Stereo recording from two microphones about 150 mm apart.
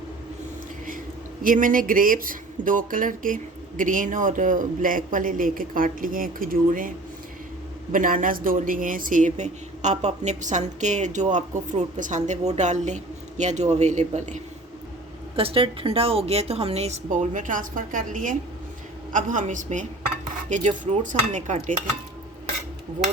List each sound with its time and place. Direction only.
1.4 s speech: 65° right (ahead or behind)
7.9 s a woman's voice: 65° right (ahead or behind)
15.4 s a woman's voice: 35° right (ahead or behind); by 21.8 s 55° right (ahead or behind)